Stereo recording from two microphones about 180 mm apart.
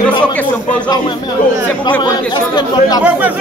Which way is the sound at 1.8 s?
25° left (ahead or behind).